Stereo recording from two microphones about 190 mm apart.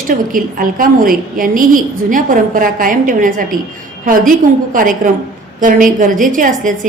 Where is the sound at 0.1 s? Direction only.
45° right (ahead or behind).